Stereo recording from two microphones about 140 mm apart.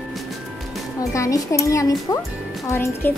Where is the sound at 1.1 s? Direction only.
20° left (ahead or behind).